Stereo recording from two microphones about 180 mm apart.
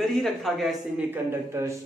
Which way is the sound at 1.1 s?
15° right (ahead or behind).